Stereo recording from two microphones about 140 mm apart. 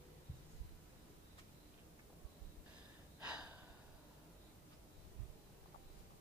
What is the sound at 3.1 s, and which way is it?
Gasp, 10° right (ahead or behind).